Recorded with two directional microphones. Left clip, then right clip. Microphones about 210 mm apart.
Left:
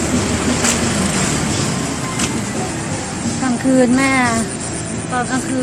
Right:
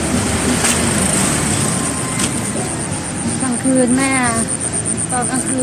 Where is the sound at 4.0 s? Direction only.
10° left (ahead or behind).